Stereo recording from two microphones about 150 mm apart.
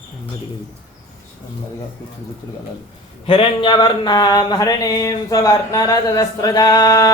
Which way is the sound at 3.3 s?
35° left (ahead or behind).